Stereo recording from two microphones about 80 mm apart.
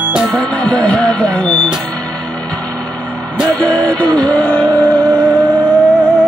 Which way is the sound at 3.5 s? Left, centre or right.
Centre.